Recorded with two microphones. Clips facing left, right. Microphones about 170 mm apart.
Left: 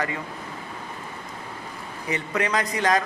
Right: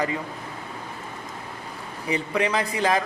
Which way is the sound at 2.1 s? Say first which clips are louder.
Right 2 dB; 10° right (ahead or behind).